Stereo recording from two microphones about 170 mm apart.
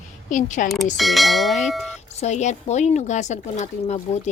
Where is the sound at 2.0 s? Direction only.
40° left (ahead or behind).